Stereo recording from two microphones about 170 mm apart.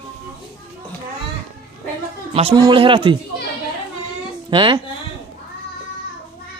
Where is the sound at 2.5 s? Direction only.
25° right (ahead or behind).